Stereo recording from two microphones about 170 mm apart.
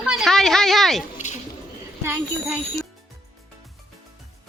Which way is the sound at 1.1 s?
45° left (ahead or behind).